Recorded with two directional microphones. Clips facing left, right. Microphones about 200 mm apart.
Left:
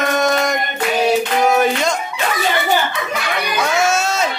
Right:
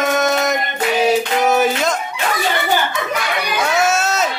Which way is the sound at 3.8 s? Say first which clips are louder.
Even; centre (ahead or behind).